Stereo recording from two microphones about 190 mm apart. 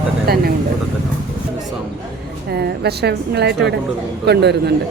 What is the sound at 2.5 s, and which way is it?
A woman's voice, 60° right (ahead or behind).